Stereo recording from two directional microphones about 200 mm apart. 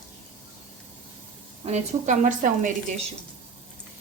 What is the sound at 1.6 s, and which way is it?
Speech, 35° right (ahead or behind).